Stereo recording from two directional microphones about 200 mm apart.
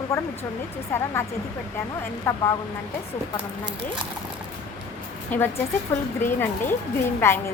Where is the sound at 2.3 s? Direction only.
10° left (ahead or behind).